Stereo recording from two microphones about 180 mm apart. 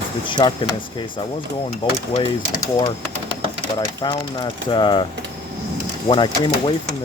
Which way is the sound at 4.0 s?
25° left (ahead or behind).